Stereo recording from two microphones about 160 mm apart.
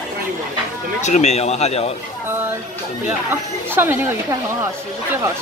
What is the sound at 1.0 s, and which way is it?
Speech, 45° left (ahead or behind).